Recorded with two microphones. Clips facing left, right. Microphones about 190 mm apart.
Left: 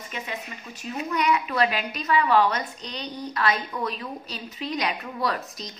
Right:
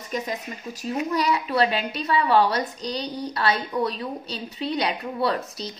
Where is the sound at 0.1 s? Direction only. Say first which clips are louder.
Right 6 dB; 40° right (ahead or behind).